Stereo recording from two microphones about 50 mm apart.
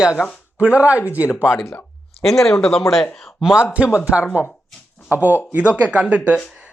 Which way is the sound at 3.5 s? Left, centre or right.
Right.